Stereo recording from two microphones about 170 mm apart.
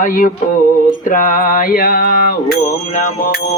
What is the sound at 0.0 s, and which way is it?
Music, 50° left (ahead or behind).